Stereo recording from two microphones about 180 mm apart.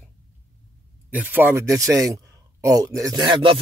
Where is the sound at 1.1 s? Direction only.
10° right (ahead or behind).